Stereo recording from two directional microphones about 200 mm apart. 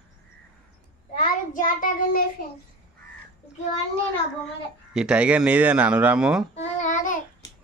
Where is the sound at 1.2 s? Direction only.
40° left (ahead or behind).